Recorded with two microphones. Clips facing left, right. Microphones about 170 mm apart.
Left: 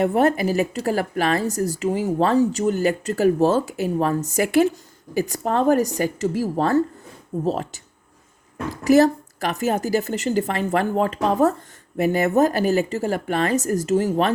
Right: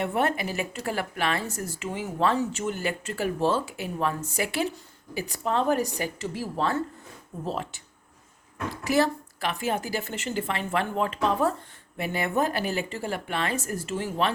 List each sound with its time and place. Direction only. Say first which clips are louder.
0.0 s speech: left 8 dB; 40° left (ahead or behind)